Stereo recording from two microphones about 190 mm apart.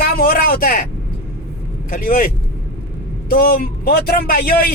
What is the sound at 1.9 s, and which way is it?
Speech, 50° left (ahead or behind).